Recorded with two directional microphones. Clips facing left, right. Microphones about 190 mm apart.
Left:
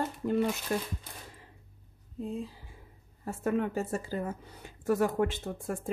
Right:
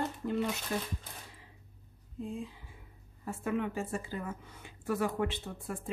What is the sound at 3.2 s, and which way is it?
Speech, 40° left (ahead or behind).